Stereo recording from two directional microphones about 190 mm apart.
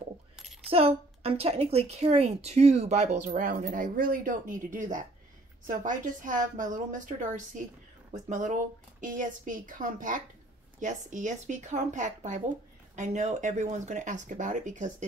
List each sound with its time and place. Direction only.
0.7 s a woman's voice: 30° right (ahead or behind)